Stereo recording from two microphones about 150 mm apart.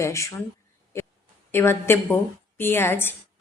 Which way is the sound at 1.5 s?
15° left (ahead or behind).